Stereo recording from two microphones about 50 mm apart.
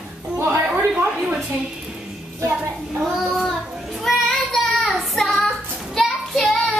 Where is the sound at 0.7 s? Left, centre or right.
Right.